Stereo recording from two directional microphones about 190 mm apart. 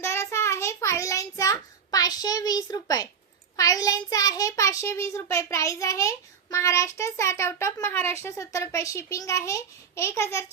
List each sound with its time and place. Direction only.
0.0 s child singing: 15° left (ahead or behind)
3.6 s a child's voice: 20° left (ahead or behind)